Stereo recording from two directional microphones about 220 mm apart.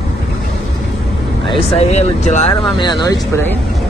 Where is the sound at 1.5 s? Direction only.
25° left (ahead or behind).